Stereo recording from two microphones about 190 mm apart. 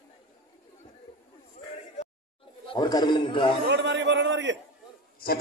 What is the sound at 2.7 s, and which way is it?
Speech, 20° left (ahead or behind).